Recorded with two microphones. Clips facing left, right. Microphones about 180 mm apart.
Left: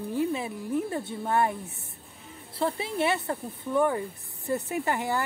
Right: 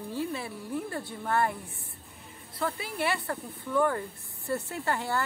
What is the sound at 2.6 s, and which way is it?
Speech, 25° left (ahead or behind).